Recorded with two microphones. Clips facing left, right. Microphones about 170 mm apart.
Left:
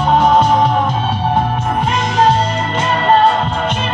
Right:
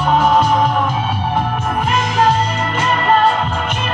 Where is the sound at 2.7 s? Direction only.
30° left (ahead or behind).